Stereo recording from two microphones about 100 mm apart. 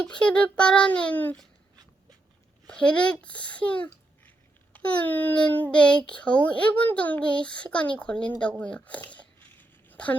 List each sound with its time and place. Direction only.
0.0 s a child's voice: 10° left (ahead or behind)
2.6 s a child's voice: 10° left (ahead or behind)